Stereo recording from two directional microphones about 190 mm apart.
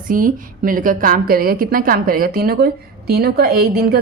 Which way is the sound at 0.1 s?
45° right (ahead or behind).